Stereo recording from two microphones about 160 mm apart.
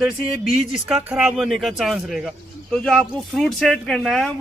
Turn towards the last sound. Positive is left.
turn(degrees=0)  # may be behind; listen again after turning